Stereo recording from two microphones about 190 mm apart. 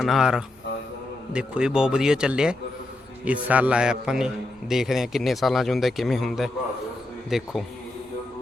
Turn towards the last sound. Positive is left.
turn(degrees=0)  # may be behind; listen again after turning